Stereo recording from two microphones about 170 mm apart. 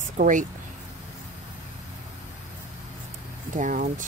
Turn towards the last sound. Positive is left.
turn(degrees=-50)  # may be behind; listen again after turning